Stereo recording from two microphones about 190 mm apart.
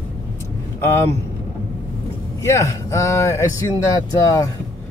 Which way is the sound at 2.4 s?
15° left (ahead or behind).